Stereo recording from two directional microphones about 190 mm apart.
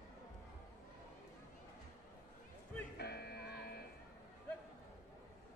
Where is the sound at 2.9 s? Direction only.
60° left (ahead or behind).